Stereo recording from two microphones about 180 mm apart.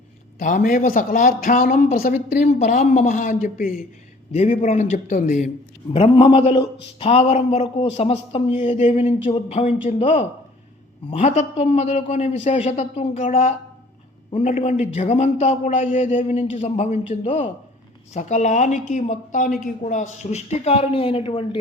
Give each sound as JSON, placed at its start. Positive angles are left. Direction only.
{"t": 0.3, "sound": "speech", "side_deg": 45}
{"t": 5.9, "sound": "a woman's voice", "side_deg": 30}